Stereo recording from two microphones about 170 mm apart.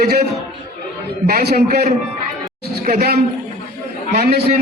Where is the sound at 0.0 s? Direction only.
70° right (ahead or behind).